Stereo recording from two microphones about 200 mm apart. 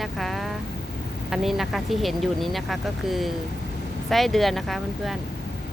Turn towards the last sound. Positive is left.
turn(degrees=0)  # may be behind; listen again after turning